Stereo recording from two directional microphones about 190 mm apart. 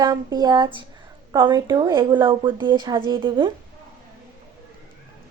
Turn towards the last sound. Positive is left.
turn(degrees=-25)  # may be behind; listen again after turning